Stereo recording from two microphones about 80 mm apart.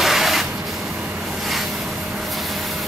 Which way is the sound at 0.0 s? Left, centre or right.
Centre.